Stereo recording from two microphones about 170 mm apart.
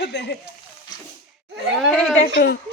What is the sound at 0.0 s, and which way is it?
Speech, 80° left.